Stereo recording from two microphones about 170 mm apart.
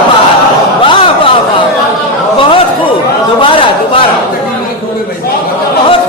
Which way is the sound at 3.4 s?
30° left (ahead or behind).